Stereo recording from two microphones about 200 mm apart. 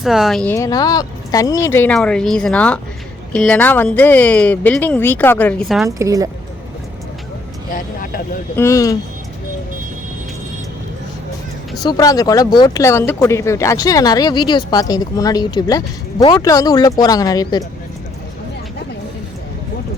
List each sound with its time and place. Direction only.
0.0 s speech: centre (ahead or behind)
0.5 s speech: 15° left (ahead or behind); by 5.9 s centre (ahead or behind)
6.0 s speech: 15° right (ahead or behind)
7.7 s speech: 45° left (ahead or behind)
8.5 s speech: 15° left (ahead or behind)
11.8 s speech: 20° left (ahead or behind)